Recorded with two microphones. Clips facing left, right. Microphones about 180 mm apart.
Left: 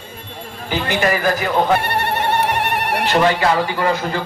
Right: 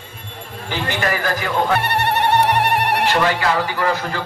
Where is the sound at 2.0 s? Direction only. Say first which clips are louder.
Right 5 dB; 65° right (ahead or behind).